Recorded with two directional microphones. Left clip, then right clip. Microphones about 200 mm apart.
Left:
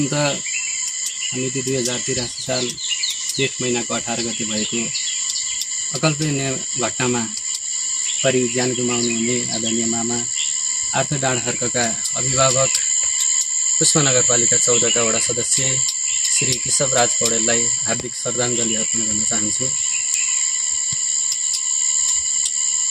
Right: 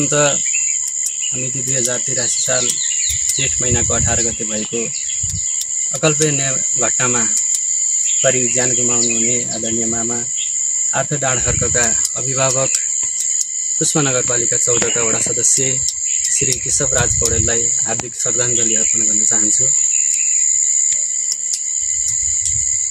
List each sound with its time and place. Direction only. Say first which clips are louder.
0.1 s cricket: right 9 dB; 25° right (ahead or behind)
3.7 s cricket: right 4 dB; 20° right (ahead or behind)
6.0 s cricket: right 5 dB; 25° right (ahead or behind)
12.4 s cricket: left 1 dB; 25° right (ahead or behind)
13.7 s cricket: even; 25° right (ahead or behind)
16.7 s cricket: left 1 dB; 25° right (ahead or behind)